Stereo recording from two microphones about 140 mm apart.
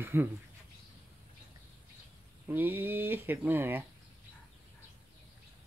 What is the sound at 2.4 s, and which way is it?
Speech, 15° right (ahead or behind).